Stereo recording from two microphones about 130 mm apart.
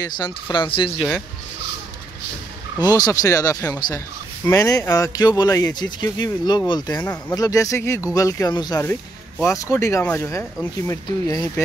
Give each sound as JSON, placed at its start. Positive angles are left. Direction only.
{"t": 0.0, "sound": "speech", "side_deg": 35}
{"t": 2.8, "sound": "speech", "side_deg": 30}
{"t": 7.0, "sound": "speech", "side_deg": 15}